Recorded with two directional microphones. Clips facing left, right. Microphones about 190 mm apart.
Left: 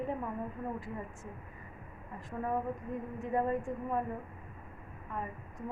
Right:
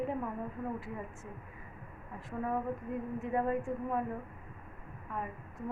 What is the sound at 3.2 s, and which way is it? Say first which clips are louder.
Speech: left 1 dB; centre (ahead or behind).